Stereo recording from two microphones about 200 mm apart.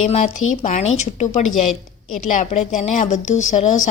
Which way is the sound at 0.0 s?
35° left (ahead or behind).